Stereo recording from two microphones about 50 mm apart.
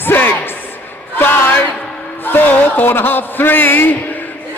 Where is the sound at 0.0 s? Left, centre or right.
Left.